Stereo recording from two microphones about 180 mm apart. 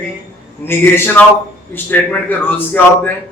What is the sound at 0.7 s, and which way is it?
A man's voice, 15° left (ahead or behind).